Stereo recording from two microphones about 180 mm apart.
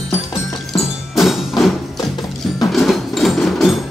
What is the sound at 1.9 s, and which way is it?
Music, 20° left (ahead or behind).